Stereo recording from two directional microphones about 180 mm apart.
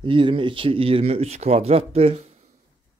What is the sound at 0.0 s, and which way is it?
A man's voice, 30° right (ahead or behind).